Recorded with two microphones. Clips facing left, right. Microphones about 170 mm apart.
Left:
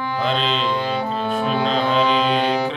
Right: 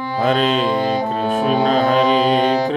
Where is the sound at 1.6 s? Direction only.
45° right (ahead or behind).